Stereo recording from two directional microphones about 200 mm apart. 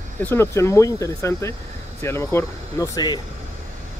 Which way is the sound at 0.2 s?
10° left (ahead or behind).